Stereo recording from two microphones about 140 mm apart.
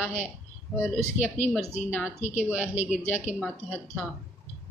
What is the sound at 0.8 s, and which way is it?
Speech, 15° left (ahead or behind).